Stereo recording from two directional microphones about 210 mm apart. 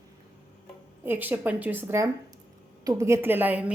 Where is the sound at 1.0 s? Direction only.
10° right (ahead or behind).